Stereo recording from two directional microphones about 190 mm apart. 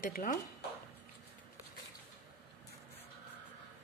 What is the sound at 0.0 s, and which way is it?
Speech, 45° left (ahead or behind).